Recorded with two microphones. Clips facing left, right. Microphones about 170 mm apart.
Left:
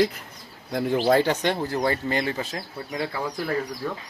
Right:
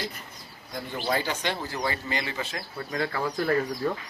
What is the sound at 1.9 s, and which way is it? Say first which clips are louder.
Speech: left 5 dB; 45° left (ahead or behind).